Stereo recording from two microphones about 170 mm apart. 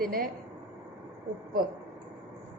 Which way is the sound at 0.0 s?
60° right (ahead or behind).